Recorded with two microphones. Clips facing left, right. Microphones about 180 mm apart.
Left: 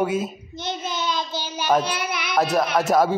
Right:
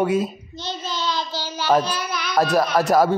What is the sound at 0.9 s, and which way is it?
Child singing, 15° left (ahead or behind).